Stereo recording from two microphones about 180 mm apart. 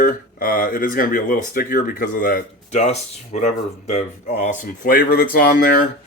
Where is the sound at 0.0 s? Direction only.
55° left (ahead or behind).